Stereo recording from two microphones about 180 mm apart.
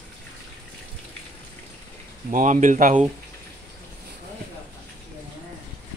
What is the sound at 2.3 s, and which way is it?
Speech, 45° right (ahead or behind).